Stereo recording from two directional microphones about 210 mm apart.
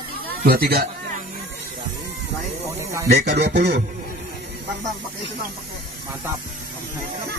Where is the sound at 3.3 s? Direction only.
55° right (ahead or behind).